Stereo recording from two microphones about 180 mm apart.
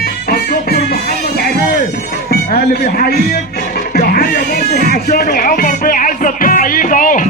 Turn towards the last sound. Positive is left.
turn(degrees=50)  # may be behind; listen again after turning